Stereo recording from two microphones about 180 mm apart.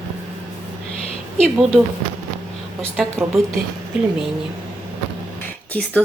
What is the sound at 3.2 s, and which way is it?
Speech, centre (ahead or behind).